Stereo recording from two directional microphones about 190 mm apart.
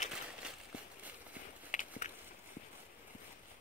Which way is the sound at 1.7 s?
40° left (ahead or behind).